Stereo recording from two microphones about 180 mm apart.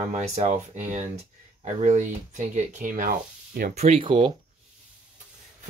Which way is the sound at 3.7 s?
35° right (ahead or behind).